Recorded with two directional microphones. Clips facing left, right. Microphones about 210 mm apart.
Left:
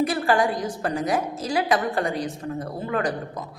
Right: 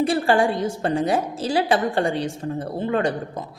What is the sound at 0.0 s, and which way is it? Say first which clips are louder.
A woman's voice: right 2 dB; 30° right (ahead or behind).